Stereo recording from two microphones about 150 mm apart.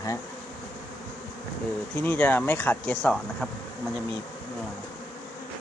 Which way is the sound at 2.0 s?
10° left (ahead or behind).